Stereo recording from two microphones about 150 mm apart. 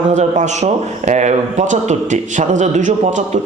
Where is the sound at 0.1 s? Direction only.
50° right (ahead or behind).